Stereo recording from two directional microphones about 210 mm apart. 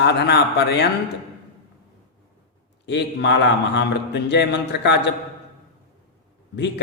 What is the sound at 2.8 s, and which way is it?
Speech, 55° left (ahead or behind).